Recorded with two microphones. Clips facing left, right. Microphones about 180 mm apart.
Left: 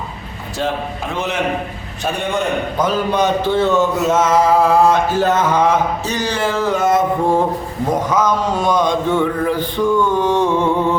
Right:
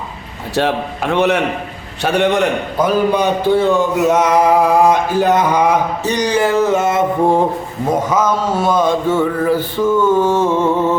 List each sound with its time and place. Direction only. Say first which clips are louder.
0.5 s a man's voice: right 4 dB; 70° right (ahead or behind)
2.7 s speech: right 3 dB; 10° right (ahead or behind)
6.3 s a sound: right 6 dB; centre (ahead or behind)
6.6 s music: right 2 dB; 25° right (ahead or behind)
7.9 s speech: right 1 dB; 10° right (ahead or behind)